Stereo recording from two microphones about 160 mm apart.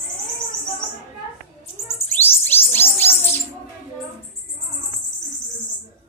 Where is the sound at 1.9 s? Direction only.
15° left (ahead or behind).